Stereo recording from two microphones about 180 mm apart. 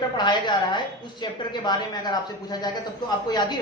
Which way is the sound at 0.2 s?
25° left (ahead or behind).